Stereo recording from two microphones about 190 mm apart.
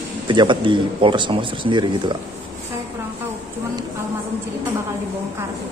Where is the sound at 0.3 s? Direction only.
25° right (ahead or behind).